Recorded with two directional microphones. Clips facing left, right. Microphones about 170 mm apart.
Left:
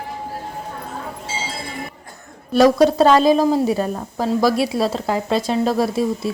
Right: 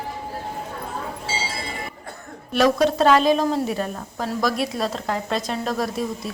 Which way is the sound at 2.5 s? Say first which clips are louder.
Left 5 dB; 35° left (ahead or behind).